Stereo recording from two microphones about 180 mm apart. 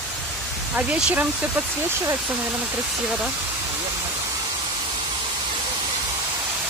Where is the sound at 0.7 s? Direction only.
5° right (ahead or behind).